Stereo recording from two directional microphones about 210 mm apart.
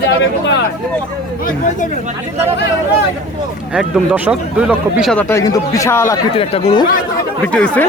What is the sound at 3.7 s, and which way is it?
Speech, 5° right (ahead or behind).